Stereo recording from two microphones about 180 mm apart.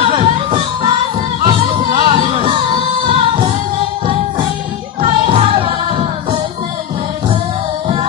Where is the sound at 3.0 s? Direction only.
30° right (ahead or behind).